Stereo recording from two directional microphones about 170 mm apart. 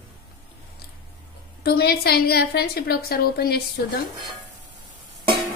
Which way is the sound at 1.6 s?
65° left (ahead or behind).